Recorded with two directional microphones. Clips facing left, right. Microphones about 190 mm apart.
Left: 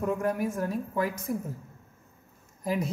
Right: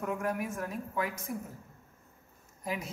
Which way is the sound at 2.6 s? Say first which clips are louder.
Left 7 dB; 35° left (ahead or behind).